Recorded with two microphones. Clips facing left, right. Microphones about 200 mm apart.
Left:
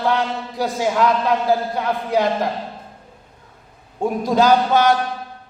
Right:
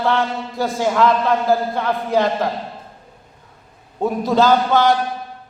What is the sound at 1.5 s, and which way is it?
Speech, 15° left (ahead or behind).